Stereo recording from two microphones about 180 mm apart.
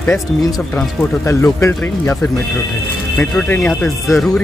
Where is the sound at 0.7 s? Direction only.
15° left (ahead or behind).